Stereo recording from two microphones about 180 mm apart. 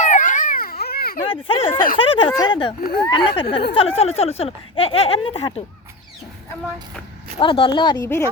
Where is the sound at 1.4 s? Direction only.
30° left (ahead or behind).